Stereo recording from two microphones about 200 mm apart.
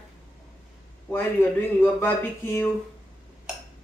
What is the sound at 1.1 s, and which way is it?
Speech, 10° left (ahead or behind).